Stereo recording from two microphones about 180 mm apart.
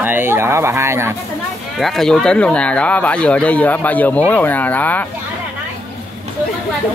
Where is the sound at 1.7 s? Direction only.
Centre (ahead or behind).